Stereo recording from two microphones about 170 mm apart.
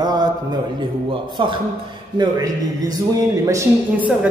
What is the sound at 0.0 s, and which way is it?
Mantra, 25° right (ahead or behind).